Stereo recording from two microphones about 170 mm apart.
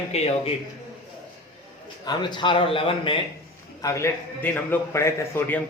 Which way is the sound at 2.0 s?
25° left (ahead or behind).